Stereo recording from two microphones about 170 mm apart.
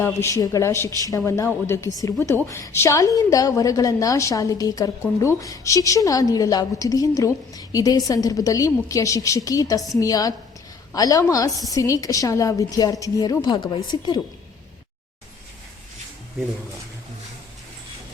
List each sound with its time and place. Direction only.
0.0 s a man's voice: 15° left (ahead or behind)